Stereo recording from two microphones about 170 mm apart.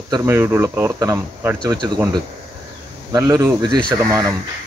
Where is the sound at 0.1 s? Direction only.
15° right (ahead or behind).